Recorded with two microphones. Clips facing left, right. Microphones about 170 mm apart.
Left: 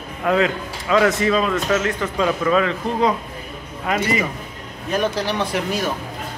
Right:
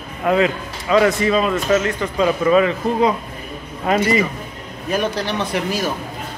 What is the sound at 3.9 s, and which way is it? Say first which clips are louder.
Speech: right 4 dB; 30° right (ahead or behind).